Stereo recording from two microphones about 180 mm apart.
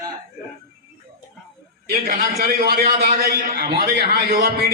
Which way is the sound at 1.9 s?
55° right (ahead or behind).